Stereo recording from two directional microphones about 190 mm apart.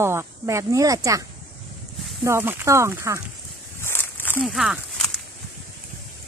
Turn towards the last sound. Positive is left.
turn(degrees=0)  # may be behind; listen again after turning